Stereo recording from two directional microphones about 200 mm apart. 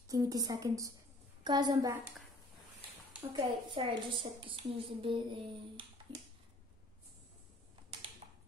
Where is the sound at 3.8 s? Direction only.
25° right (ahead or behind).